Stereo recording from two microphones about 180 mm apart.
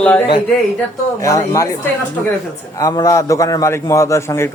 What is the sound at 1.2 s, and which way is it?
Speech, 15° left (ahead or behind).